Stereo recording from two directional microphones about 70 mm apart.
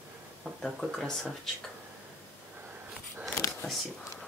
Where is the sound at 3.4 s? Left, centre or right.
Left.